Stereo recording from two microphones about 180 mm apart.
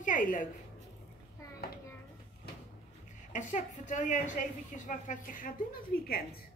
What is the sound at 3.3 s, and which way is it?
A woman's voice, 45° left (ahead or behind).